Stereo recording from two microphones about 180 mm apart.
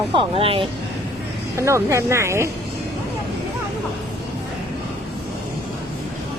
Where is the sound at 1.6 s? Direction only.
15° right (ahead or behind).